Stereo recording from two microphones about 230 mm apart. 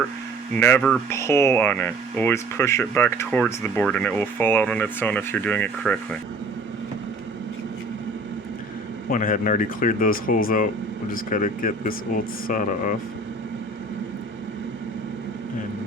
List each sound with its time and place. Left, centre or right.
0.5 s speech: centre
9.0 s speech: left